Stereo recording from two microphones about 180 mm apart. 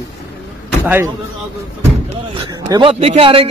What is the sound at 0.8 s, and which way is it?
Speech, 15° right (ahead or behind).